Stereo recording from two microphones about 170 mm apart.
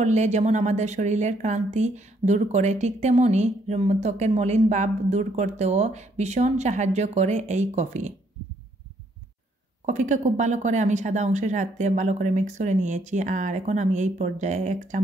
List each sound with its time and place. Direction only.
0.0 s a woman's voice: 45° right (ahead or behind)
9.8 s speech: 45° right (ahead or behind)